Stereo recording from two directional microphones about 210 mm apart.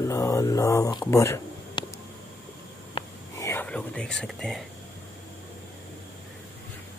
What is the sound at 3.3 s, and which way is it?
Whispering, 10° left (ahead or behind).